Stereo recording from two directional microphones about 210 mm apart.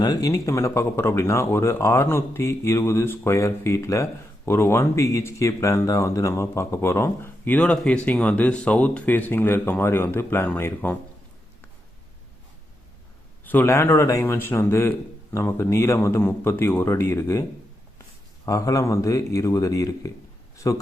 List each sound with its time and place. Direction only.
0.0 s speech: 15° left (ahead or behind)
13.4 s speech: 10° left (ahead or behind)
18.4 s speech: 15° left (ahead or behind)